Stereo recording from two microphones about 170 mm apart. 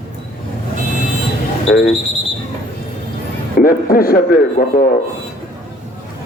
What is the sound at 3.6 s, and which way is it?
Speech, 60° left (ahead or behind).